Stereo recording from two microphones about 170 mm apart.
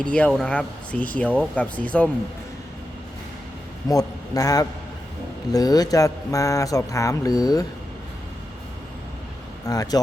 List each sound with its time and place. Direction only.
0.0 s speech: 5° left (ahead or behind)
3.8 s speech: 20° left (ahead or behind)
9.6 s speech: 20° left (ahead or behind)